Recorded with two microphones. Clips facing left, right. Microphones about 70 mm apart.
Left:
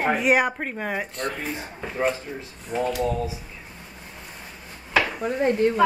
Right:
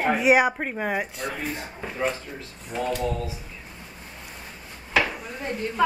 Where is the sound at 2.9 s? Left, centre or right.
Centre.